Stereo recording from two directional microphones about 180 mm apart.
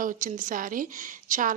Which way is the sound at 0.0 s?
50° right (ahead or behind).